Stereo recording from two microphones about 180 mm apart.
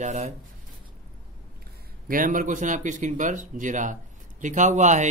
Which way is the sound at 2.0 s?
50° right (ahead or behind).